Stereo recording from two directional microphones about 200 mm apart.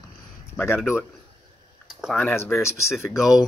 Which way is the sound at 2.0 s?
5° left (ahead or behind).